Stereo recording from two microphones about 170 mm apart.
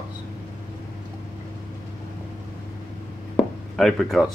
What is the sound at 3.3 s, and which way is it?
Chop, centre (ahead or behind).